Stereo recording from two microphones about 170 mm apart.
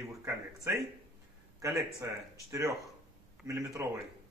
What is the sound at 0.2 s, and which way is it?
Speech, 15° right (ahead or behind).